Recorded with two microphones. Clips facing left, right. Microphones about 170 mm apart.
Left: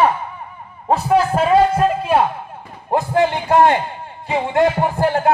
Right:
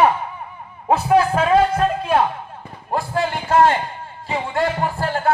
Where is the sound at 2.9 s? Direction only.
20° left (ahead or behind).